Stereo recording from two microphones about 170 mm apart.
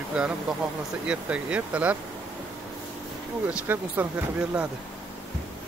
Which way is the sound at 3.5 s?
10° right (ahead or behind).